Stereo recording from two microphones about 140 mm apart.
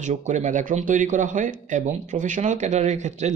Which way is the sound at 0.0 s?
60° right (ahead or behind).